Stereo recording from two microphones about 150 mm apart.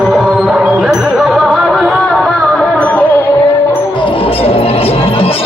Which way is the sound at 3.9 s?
35° left (ahead or behind).